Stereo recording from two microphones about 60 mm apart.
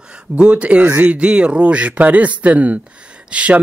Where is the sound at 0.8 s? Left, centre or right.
Right.